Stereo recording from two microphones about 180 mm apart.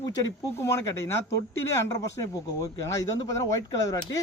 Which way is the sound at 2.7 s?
20° left (ahead or behind).